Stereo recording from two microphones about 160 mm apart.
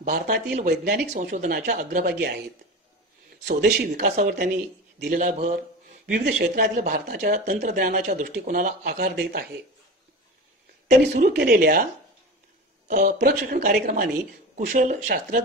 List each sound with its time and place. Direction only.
0.0 s speech: 65° right (ahead or behind)
0.7 s a man's voice: 90° right
1.2 s speech: 60° right (ahead or behind); by 2.4 s 85° right
3.4 s a man's voice: 90° right
3.9 s speech: 60° right (ahead or behind); by 6.7 s 75° right (ahead or behind)
6.8 s speech: 55° right (ahead or behind)
7.2 s speech: 70° right (ahead or behind)
11.1 s speech: 80° right
12.8 s speech: 60° right (ahead or behind)